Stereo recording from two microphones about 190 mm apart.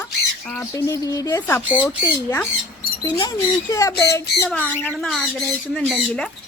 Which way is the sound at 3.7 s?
15° left (ahead or behind).